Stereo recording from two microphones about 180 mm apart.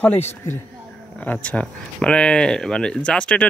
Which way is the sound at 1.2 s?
10° left (ahead or behind).